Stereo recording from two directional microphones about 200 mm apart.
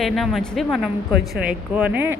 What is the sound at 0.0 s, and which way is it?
Speech, centre (ahead or behind).